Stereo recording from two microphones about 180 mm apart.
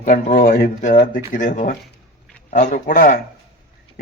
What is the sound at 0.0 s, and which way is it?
Speech, 45° left (ahead or behind).